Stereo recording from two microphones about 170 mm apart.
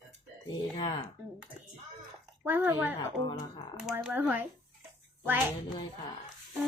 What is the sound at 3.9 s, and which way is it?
Speech, 10° right (ahead or behind).